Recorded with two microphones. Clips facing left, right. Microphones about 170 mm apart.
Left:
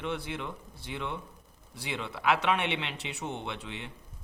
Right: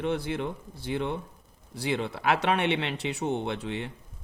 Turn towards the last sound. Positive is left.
turn(degrees=-40)  # may be behind; listen again after turning